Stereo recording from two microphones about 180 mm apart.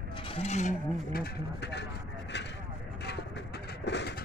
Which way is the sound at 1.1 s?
65° left (ahead or behind).